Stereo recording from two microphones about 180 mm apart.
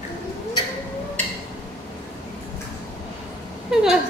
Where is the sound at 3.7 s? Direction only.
5° right (ahead or behind).